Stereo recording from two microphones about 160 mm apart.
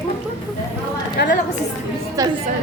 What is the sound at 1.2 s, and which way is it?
Speech, 90° left.